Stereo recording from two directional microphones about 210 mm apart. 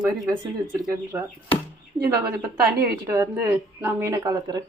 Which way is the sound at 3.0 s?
15° right (ahead or behind).